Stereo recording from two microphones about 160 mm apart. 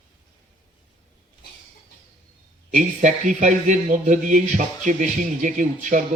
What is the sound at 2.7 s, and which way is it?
Speech, 50° right (ahead or behind).